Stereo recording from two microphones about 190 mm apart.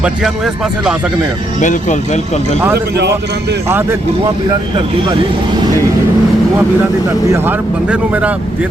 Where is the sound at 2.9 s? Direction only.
60° right (ahead or behind).